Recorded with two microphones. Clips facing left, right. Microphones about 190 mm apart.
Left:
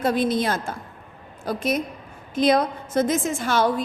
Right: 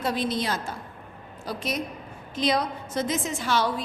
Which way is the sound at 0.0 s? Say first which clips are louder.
Left 6 dB; 50° left (ahead or behind).